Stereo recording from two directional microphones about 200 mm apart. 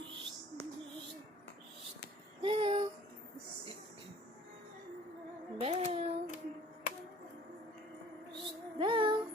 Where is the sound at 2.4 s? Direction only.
25° right (ahead or behind).